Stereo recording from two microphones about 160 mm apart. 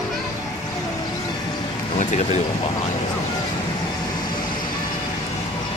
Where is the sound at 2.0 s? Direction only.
50° left (ahead or behind).